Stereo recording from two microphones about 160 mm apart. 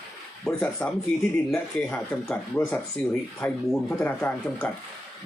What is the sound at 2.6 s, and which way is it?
Speech, 15° left (ahead or behind).